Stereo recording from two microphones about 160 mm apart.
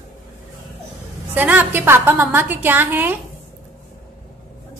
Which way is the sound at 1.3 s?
10° right (ahead or behind).